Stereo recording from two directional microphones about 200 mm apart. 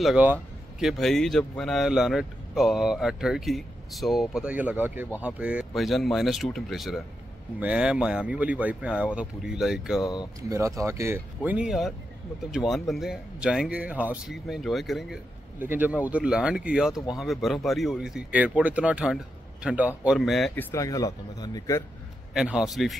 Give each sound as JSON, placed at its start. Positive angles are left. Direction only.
{"t": 0.0, "sound": "speech", "side_deg": -5}
{"t": 10.5, "sound": "speech", "side_deg": -15}
{"t": 20.7, "sound": "speech", "side_deg": 15}
{"t": 22.3, "sound": "speech", "side_deg": -5}